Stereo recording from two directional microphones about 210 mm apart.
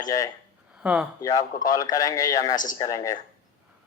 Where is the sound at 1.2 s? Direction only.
15° left (ahead or behind).